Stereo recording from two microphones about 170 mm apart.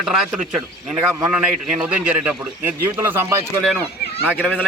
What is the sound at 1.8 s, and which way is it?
Speech, 5° right (ahead or behind).